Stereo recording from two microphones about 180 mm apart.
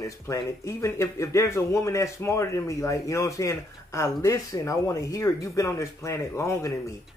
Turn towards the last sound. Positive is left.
turn(degrees=15)  # may be behind; listen again after turning